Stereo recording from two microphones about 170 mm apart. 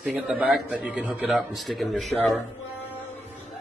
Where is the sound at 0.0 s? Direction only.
5° right (ahead or behind).